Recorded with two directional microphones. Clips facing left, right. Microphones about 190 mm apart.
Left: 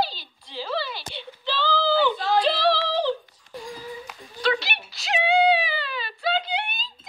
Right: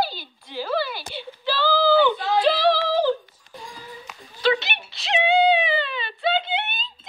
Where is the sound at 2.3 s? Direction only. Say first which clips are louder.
Right 2 dB; centre (ahead or behind).